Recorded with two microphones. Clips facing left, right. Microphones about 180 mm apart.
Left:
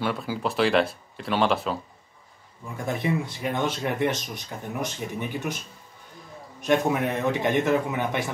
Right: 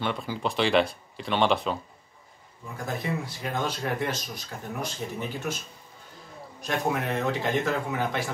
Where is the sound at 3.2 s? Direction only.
20° left (ahead or behind).